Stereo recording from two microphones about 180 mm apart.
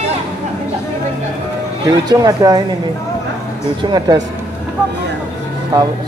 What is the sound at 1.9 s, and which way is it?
Speech, 20° right (ahead or behind).